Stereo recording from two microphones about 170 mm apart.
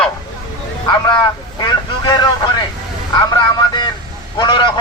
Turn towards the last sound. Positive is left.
turn(degrees=25)  # may be behind; listen again after turning